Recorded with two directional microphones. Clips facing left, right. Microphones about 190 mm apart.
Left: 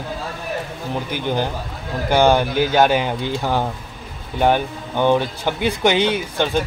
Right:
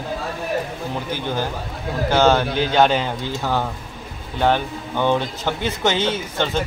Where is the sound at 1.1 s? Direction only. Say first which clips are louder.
Left 4 dB; 15° left (ahead or behind).